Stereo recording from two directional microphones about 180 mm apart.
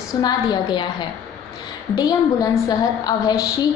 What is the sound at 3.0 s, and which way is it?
Speech, 20° left (ahead or behind).